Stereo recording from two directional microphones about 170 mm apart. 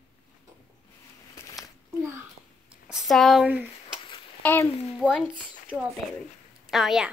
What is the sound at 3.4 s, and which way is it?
Speech, 10° right (ahead or behind).